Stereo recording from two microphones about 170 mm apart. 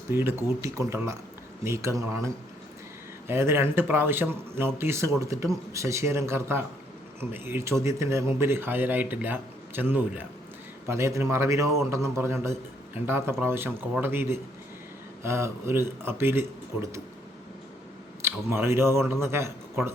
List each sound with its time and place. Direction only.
0.1 s speech: 15° right (ahead or behind)
18.2 s speech: 15° right (ahead or behind)